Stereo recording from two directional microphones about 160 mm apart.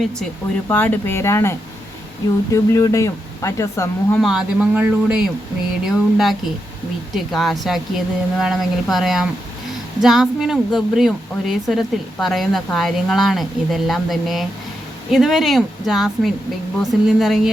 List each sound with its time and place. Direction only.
0.7 s speech: 10° left (ahead or behind)
4.2 s a man's voice: centre (ahead or behind)